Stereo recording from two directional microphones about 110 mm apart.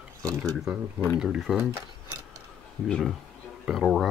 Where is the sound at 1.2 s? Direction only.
5° right (ahead or behind).